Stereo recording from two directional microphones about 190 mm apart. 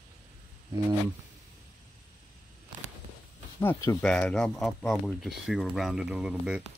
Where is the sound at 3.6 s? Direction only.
15° left (ahead or behind).